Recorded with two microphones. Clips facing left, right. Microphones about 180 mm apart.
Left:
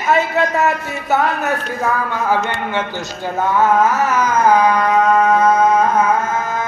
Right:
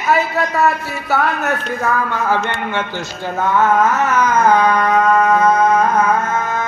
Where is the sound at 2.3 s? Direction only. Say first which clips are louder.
Even; 15° left (ahead or behind).